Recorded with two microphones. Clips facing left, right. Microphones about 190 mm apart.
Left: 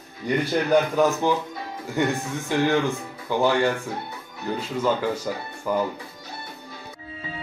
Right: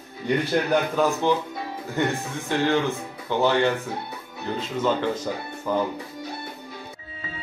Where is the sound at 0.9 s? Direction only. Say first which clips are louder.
Left 1 dB; 15° left (ahead or behind).